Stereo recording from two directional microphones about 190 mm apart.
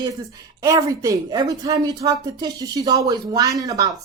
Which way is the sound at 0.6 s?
15° right (ahead or behind).